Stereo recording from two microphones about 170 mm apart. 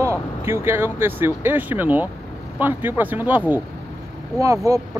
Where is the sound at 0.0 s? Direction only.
15° right (ahead or behind).